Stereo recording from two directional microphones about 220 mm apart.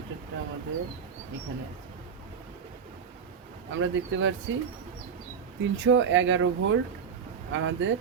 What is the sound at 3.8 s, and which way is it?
Speech, 60° right (ahead or behind).